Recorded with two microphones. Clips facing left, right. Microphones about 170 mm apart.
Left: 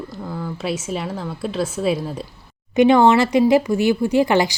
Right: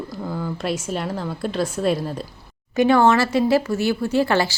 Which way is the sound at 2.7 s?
20° left (ahead or behind).